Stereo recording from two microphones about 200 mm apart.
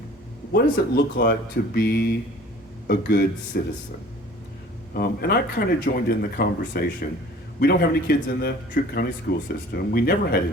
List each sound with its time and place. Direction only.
0.5 s speech: 50° left (ahead or behind)
4.9 s speech: 50° left (ahead or behind)